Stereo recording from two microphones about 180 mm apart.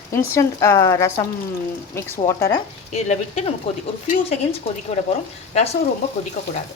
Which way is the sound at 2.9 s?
35° left (ahead or behind).